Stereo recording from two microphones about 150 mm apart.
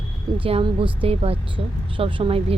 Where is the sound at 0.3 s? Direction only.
35° right (ahead or behind).